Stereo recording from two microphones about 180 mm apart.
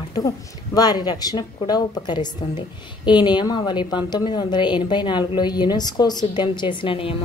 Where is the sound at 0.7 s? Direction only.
20° left (ahead or behind).